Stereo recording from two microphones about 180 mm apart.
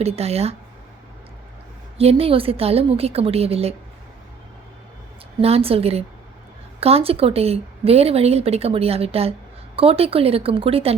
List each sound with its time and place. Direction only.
0.0 s speech: 35° right (ahead or behind)
2.0 s speech: 35° right (ahead or behind)
5.4 s speech: 35° right (ahead or behind)